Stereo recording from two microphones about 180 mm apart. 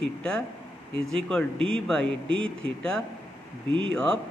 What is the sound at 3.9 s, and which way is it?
Speech, 5° left (ahead or behind).